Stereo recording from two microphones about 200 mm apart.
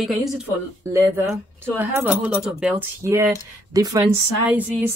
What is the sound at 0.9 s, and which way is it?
A woman's voice, 15° right (ahead or behind).